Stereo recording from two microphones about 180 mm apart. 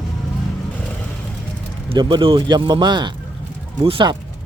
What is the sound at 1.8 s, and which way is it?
Speech, 25° right (ahead or behind).